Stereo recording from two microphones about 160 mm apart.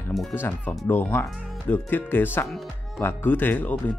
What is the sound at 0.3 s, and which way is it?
Speech, 10° left (ahead or behind).